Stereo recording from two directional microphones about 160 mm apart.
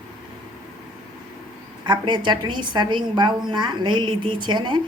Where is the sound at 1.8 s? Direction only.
30° right (ahead or behind).